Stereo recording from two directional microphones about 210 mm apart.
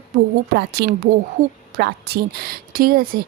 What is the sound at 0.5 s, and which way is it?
Speech, 50° right (ahead or behind).